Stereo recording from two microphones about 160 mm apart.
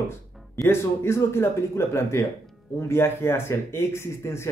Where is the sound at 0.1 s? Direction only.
15° left (ahead or behind).